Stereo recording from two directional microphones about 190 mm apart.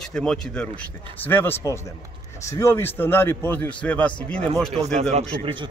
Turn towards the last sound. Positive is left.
turn(degrees=-30)  # may be behind; listen again after turning